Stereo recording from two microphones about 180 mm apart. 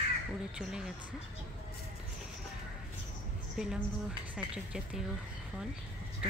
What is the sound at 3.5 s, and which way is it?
Speech, 5° right (ahead or behind).